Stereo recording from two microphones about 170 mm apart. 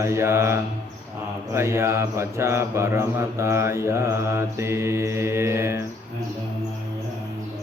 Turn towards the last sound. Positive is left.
turn(degrees=-15)  # may be behind; listen again after turning